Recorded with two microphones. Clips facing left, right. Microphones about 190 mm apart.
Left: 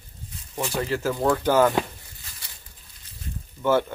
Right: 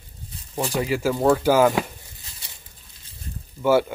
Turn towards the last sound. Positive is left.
turn(degrees=-10)  # may be behind; listen again after turning